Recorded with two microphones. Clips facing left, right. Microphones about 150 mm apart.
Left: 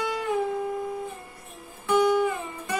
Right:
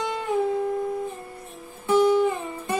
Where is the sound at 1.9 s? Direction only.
25° right (ahead or behind).